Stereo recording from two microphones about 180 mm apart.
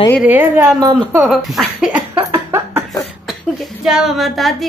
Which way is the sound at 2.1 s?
15° right (ahead or behind).